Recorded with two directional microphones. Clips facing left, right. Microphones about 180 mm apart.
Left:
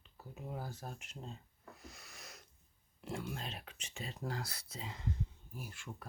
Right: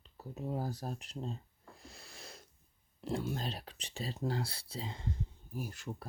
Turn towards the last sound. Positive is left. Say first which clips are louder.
# right 7 dB
turn(degrees=-35)  # may be behind; listen again after turning